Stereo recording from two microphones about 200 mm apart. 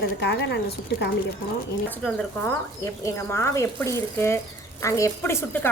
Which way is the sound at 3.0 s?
15° left (ahead or behind).